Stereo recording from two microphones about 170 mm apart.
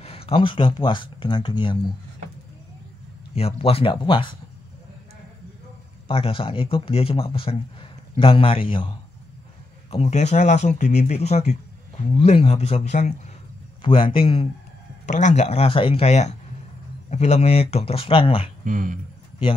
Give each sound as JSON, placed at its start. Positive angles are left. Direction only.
{"t": 0.0, "sound": "speech", "side_deg": 35}
{"t": 3.3, "sound": "a man's voice", "side_deg": 35}
{"t": 6.0, "sound": "a man's voice", "side_deg": 35}
{"t": 13.8, "sound": "a man's voice", "side_deg": 30}
{"t": 15.0, "sound": "a man's voice", "side_deg": 45}
{"t": 18.6, "sound": "speech", "side_deg": -50}